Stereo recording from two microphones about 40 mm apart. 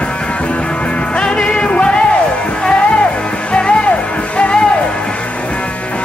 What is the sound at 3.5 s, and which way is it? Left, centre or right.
Music, left.